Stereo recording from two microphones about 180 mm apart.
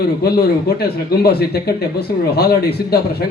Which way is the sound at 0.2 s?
60° left (ahead or behind).